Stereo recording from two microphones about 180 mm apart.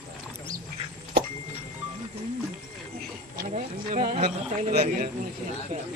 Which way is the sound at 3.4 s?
50° right (ahead or behind).